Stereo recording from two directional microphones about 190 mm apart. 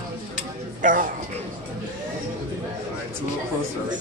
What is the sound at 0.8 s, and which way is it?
Speech, 45° right (ahead or behind).